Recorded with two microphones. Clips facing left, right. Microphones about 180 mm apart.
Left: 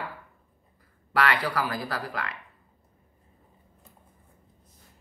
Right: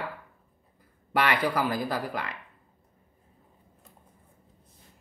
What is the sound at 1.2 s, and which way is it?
Speech, 20° right (ahead or behind).